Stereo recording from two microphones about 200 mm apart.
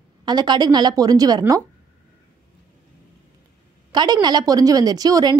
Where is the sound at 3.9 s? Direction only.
20° right (ahead or behind).